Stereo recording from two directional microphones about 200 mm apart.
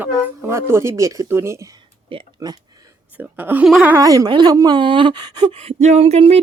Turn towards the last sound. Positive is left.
turn(degrees=-30)  # may be behind; listen again after turning